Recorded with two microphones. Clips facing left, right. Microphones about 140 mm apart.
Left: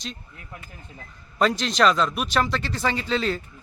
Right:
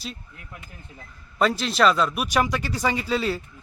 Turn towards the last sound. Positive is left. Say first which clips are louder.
# even
turn(degrees=-10)  # may be behind; listen again after turning